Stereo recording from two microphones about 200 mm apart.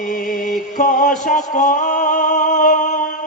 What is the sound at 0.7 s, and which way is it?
Music, 40° left (ahead or behind).